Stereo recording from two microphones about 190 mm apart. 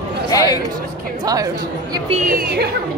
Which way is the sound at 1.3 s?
20° right (ahead or behind).